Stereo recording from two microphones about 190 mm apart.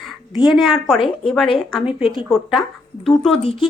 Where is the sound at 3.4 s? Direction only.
30° left (ahead or behind).